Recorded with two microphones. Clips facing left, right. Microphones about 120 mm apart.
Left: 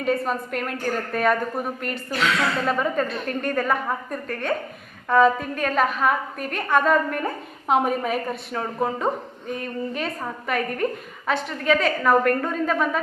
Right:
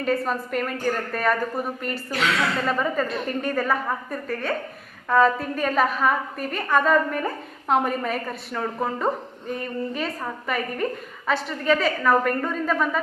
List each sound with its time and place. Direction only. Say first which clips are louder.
0.0 s a woman's voice: even; centre (ahead or behind)